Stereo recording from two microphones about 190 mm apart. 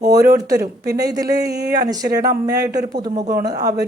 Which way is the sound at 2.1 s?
20° right (ahead or behind).